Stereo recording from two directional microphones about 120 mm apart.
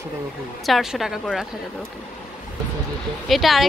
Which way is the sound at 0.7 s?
Centre (ahead or behind).